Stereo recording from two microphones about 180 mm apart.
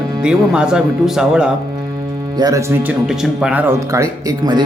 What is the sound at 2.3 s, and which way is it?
Speech, 20° right (ahead or behind).